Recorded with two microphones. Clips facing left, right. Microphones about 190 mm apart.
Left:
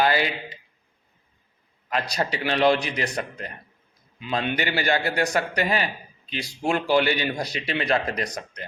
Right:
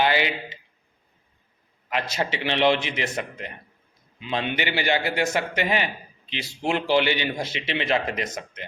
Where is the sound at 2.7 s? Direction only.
40° left (ahead or behind).